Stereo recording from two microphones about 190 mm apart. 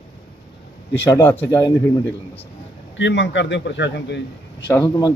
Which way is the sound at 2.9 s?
70° left (ahead or behind).